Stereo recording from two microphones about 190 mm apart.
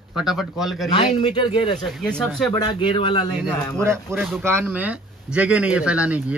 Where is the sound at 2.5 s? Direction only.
25° left (ahead or behind).